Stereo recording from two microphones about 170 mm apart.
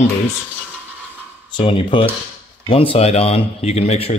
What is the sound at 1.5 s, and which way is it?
Speech, 30° left (ahead or behind).